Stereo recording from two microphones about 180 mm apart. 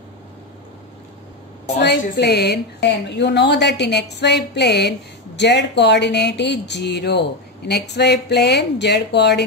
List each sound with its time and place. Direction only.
1.8 s a woman's voice: 70° left (ahead or behind)